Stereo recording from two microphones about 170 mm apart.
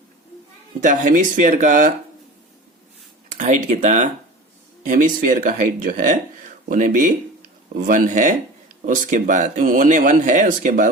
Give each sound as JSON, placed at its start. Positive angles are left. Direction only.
{"t": 0.8, "sound": "speech", "side_deg": -50}
{"t": 3.2, "sound": "speech", "side_deg": -45}